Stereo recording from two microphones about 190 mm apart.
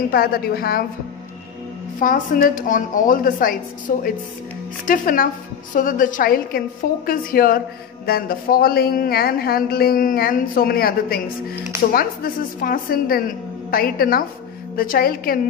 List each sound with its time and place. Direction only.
0.1 s speech: 55° left (ahead or behind)
2.0 s speech: 45° left (ahead or behind)